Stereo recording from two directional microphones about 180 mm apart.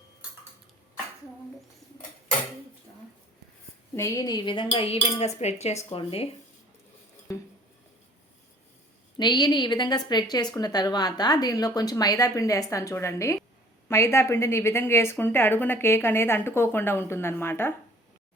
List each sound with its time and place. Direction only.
3.9 s a woman's voice: 15° left (ahead or behind)
7.3 s a woman's voice: 15° left (ahead or behind)
9.1 s a woman's voice: 25° left (ahead or behind)